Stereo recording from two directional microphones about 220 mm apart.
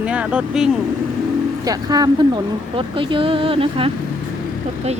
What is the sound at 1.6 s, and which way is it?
Speech, 15° right (ahead or behind).